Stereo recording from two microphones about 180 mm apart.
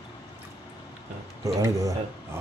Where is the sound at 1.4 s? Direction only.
20° right (ahead or behind).